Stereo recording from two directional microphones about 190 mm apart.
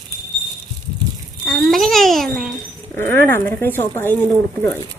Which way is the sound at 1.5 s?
Centre (ahead or behind).